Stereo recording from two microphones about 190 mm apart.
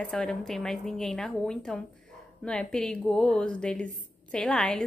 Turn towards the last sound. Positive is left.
turn(degrees=5)  # may be behind; listen again after turning